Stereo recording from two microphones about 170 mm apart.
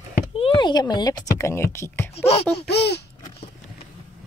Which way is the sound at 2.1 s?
35° left (ahead or behind).